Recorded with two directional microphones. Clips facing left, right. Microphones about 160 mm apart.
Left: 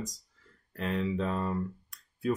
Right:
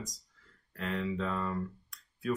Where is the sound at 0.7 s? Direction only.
25° left (ahead or behind).